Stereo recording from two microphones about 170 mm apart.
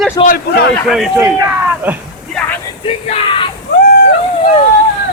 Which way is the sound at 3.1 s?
30° left (ahead or behind).